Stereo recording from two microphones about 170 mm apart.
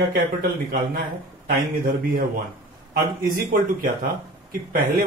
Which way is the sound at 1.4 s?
60° right (ahead or behind).